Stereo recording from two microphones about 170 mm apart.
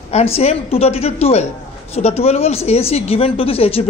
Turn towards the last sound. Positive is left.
turn(degrees=35)  # may be behind; listen again after turning